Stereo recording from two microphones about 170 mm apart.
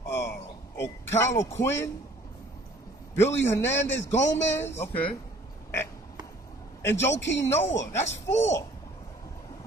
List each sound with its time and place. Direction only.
0.1 s a sound: 15° left (ahead or behind)
3.2 s a man's voice: 15° left (ahead or behind)
6.8 s a man's voice: 15° left (ahead or behind)
7.2 s speech: 90° left
7.4 s a man's voice: 15° left (ahead or behind)